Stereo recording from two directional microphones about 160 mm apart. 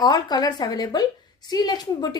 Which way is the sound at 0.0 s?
25° left (ahead or behind).